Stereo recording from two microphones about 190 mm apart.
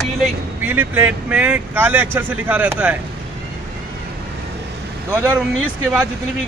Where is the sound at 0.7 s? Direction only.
10° right (ahead or behind).